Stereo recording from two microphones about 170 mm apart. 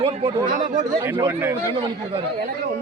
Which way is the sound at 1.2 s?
15° right (ahead or behind).